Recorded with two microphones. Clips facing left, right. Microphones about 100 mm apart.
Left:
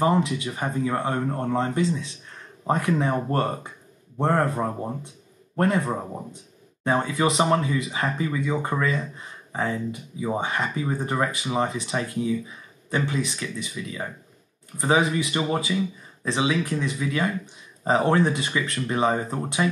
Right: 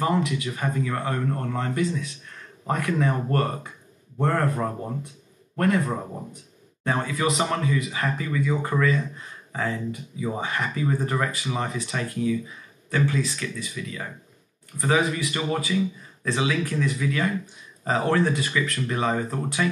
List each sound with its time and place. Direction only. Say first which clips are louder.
0.0 s speech: left 2 dB; 25° left (ahead or behind)